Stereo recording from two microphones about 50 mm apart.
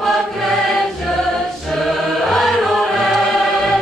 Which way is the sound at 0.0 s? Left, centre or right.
Centre.